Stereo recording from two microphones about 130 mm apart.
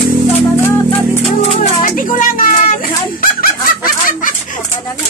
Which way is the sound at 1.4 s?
60° left (ahead or behind).